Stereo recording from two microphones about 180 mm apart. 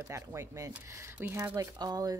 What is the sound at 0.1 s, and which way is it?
Speech, 15° right (ahead or behind).